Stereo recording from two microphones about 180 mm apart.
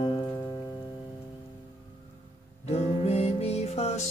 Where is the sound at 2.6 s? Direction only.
35° left (ahead or behind).